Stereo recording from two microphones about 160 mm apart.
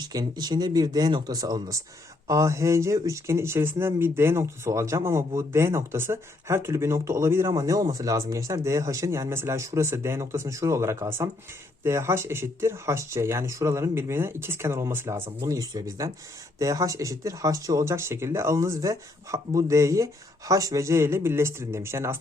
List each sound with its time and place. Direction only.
0.0 s speech: 25° right (ahead or behind)